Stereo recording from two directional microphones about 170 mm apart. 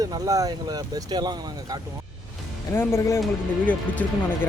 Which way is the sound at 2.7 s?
15° left (ahead or behind).